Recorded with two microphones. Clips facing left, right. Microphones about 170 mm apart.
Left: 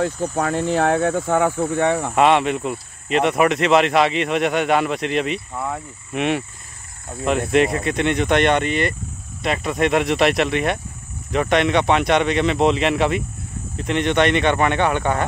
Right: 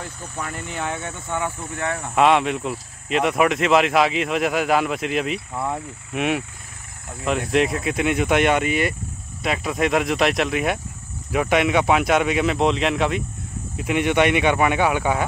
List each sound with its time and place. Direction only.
0.4 s speech: 90° left
2.1 s speech: centre (ahead or behind)